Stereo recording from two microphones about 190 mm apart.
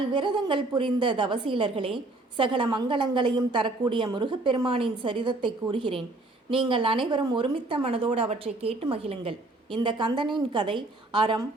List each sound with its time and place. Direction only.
0.1 s a woman's voice: 25° right (ahead or behind)